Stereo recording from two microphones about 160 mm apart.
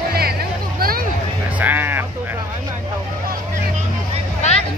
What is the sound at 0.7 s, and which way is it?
Vehicle, 65° right (ahead or behind).